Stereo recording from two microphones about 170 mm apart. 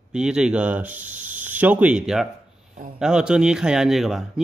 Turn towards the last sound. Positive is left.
turn(degrees=0)  # may be behind; listen again after turning